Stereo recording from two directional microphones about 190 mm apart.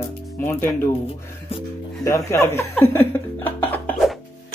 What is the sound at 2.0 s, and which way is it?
Speech, 15° left (ahead or behind).